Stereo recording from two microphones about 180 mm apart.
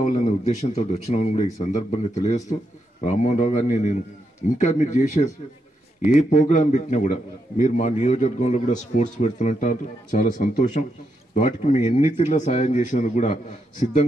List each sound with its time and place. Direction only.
0.0 s a man's voice: 40° left (ahead or behind)